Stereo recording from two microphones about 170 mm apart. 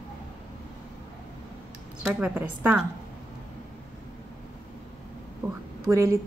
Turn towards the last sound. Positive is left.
turn(degrees=-15)  # may be behind; listen again after turning